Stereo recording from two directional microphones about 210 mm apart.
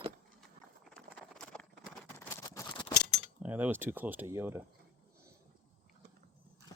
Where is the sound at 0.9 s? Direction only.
5° left (ahead or behind).